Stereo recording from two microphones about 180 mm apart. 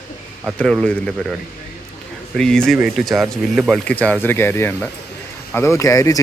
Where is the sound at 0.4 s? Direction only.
5° left (ahead or behind).